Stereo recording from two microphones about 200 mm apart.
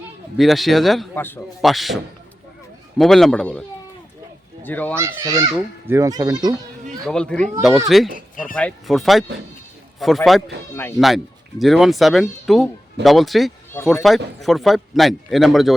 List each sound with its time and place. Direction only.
0.3 s speech: centre (ahead or behind)
3.0 s speech: centre (ahead or behind)
4.6 s speech: 10° left (ahead or behind)
4.9 s a child's voice: 15° right (ahead or behind)
7.0 s speech: 5° left (ahead or behind)